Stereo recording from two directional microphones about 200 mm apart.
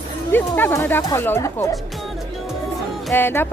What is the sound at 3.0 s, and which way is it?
Speech, 10° left (ahead or behind).